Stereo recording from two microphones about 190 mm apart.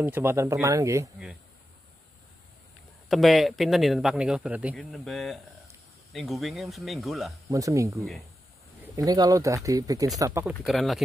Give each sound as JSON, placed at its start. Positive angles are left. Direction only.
{"t": 0.0, "sound": "speech", "side_deg": -10}
{"t": 3.1, "sound": "speech", "side_deg": 0}
{"t": 7.5, "sound": "speech", "side_deg": -15}
{"t": 10.6, "sound": "speech", "side_deg": 0}